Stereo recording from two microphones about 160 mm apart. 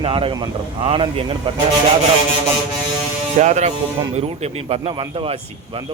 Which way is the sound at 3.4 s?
50° right (ahead or behind).